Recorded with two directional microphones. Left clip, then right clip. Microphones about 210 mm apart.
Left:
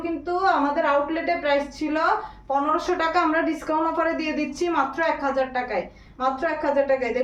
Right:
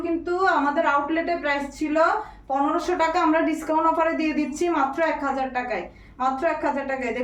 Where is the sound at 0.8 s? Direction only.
10° left (ahead or behind).